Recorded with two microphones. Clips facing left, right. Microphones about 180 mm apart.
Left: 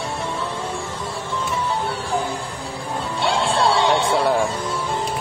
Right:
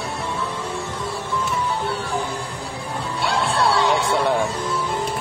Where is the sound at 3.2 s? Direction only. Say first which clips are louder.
Left 2 dB; 25° left (ahead or behind).